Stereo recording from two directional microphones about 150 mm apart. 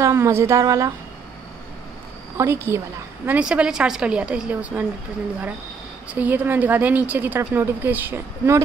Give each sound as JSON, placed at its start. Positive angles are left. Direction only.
{"t": 0.0, "sound": "speech", "side_deg": -20}
{"t": 2.3, "sound": "a woman's voice", "side_deg": -15}
{"t": 6.0, "sound": "a woman's voice", "side_deg": -10}